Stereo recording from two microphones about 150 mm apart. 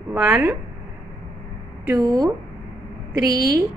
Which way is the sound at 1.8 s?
25° right (ahead or behind).